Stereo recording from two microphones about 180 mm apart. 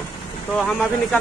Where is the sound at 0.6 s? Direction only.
5° left (ahead or behind).